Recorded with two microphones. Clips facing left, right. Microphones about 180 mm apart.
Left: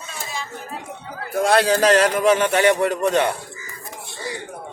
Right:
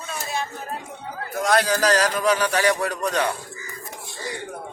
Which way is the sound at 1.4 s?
30° left (ahead or behind).